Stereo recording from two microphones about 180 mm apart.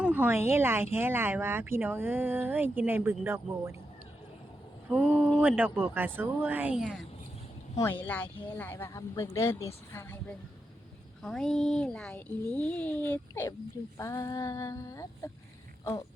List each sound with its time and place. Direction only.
0.0 s speech: 5° right (ahead or behind)
4.9 s speech: 10° right (ahead or behind)
8.0 s speech: 10° left (ahead or behind)
15.8 s a sound: 15° left (ahead or behind)